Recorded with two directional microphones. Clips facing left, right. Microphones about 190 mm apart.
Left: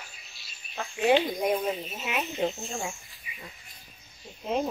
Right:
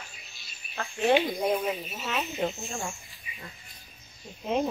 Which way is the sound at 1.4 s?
Centre (ahead or behind).